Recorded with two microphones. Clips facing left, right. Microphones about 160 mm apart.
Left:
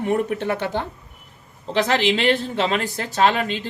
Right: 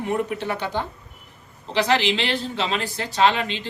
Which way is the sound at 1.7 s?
50° left (ahead or behind).